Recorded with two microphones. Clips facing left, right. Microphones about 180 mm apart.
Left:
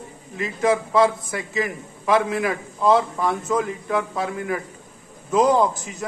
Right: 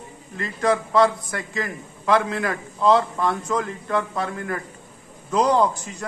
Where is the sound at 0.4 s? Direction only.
5° left (ahead or behind).